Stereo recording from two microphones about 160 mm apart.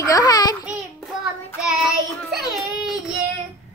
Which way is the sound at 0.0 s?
25° left (ahead or behind).